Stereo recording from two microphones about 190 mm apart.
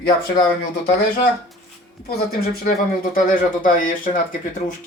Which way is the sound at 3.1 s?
45° left (ahead or behind).